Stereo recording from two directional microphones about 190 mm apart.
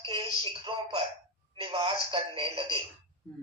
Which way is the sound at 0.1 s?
25° right (ahead or behind).